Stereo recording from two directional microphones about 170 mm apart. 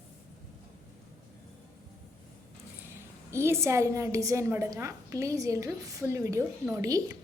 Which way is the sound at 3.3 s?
15° right (ahead or behind).